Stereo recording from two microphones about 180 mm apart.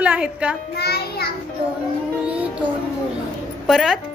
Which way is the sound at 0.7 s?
60° left (ahead or behind).